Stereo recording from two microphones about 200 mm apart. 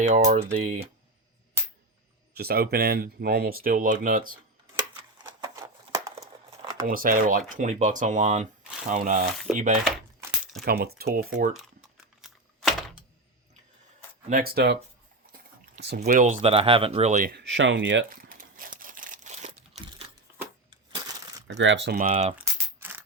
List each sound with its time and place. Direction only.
0.0 s speech: 40° right (ahead or behind)
2.3 s speech: 50° right (ahead or behind)
5.1 s a sound: 15° right (ahead or behind)
6.8 s speech: 45° right (ahead or behind)
9.5 s dishes: centre (ahead or behind)
10.7 s speech: 50° right (ahead or behind)
12.2 s a sound: centre (ahead or behind)
14.3 s speech: 45° right (ahead or behind)
16.0 s speech: 40° right (ahead or behind)
17.3 s speech: 65° right (ahead or behind)
18.1 s crumpling: 45° right (ahead or behind)
21.4 s speech: 65° right (ahead or behind)
22.0 s a sound: 30° right (ahead or behind)
22.4 s coin: 10° right (ahead or behind)